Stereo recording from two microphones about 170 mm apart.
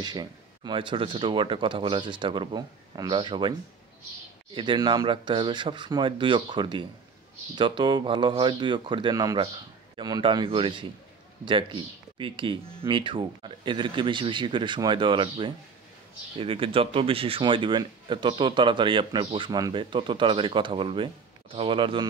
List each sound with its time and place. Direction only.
0.0 s speech: 25° right (ahead or behind)
4.6 s speech: 30° right (ahead or behind)